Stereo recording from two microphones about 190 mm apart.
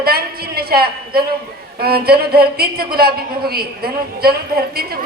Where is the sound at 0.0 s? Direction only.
55° right (ahead or behind).